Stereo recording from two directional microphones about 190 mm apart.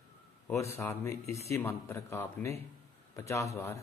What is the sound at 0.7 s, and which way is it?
Speech, 15° left (ahead or behind).